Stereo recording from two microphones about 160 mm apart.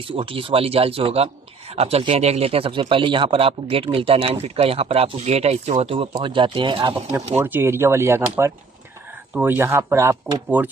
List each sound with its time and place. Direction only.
0.0 s speech: 35° right (ahead or behind)
7.3 s speech: 10° right (ahead or behind)